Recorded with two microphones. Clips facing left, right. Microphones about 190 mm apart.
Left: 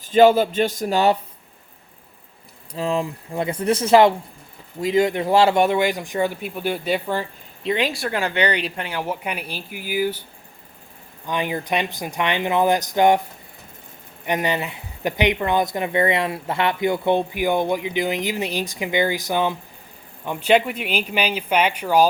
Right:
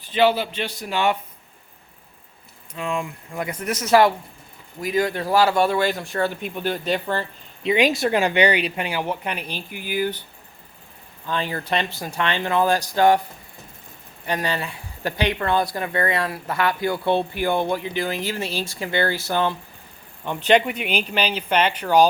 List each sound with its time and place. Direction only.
0.1 s a man's voice: 45° left (ahead or behind)
2.7 s speech: 35° left (ahead or behind); by 7.3 s 10° left (ahead or behind)
7.8 s speech: 20° right (ahead or behind)
9.0 s speech: 5° left (ahead or behind)
11.3 s speech: 15° left (ahead or behind)
14.3 s speech: 20° left (ahead or behind)